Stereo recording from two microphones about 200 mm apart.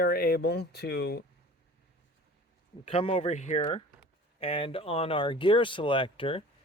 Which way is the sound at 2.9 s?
30° left (ahead or behind).